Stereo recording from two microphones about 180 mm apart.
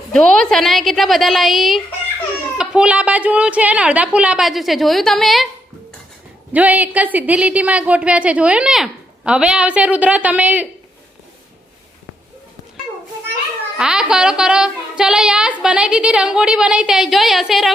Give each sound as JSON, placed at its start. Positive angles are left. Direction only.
{"t": 0.1, "sound": "a woman's voice", "side_deg": 5}
{"t": 6.5, "sound": "a woman's voice", "side_deg": -10}
{"t": 13.7, "sound": "speech", "side_deg": -5}